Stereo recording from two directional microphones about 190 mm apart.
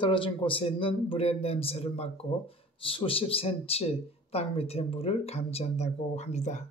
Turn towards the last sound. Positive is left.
turn(degrees=35)  # may be behind; listen again after turning